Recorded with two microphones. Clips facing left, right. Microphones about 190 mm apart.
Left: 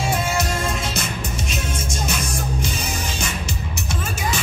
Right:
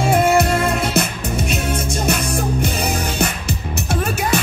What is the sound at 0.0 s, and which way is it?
Music, 60° right (ahead or behind).